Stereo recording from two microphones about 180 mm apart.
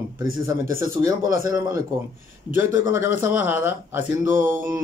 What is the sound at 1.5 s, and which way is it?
A man's voice, 20° right (ahead or behind).